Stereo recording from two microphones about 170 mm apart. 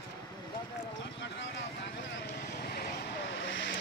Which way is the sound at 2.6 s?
70° left (ahead or behind).